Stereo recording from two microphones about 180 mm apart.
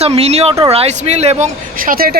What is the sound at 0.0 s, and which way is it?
Speech, 35° right (ahead or behind).